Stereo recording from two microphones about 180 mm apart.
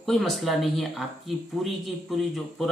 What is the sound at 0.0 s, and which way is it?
Speech, centre (ahead or behind).